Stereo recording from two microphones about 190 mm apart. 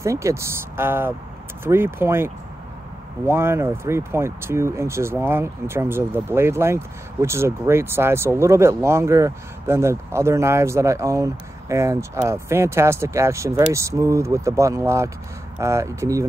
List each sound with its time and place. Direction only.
0.0 s speech: 15° right (ahead or behind)